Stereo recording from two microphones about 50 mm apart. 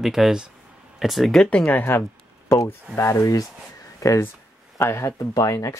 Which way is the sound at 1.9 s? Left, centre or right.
Left.